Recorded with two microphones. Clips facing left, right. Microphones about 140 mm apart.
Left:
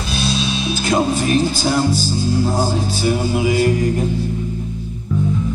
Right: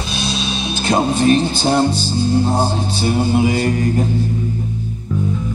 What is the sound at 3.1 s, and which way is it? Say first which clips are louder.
Music: right 2 dB; 30° right (ahead or behind).